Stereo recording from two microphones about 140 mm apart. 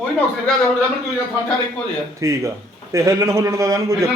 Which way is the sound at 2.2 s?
20° right (ahead or behind).